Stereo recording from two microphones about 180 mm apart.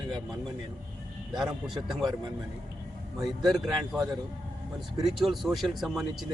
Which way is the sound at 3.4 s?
5° right (ahead or behind).